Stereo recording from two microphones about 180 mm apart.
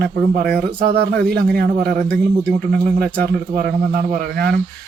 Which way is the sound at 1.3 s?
60° right (ahead or behind).